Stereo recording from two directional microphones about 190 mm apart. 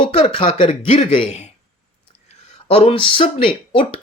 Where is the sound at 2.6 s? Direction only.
30° left (ahead or behind).